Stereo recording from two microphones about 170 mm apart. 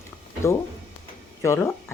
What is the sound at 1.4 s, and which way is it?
Speech, 15° left (ahead or behind).